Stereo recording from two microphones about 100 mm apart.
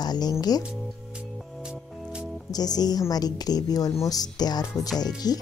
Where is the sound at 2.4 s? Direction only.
40° left (ahead or behind).